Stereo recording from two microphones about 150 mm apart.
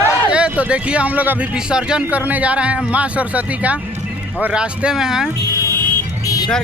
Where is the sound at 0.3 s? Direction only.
5° right (ahead or behind).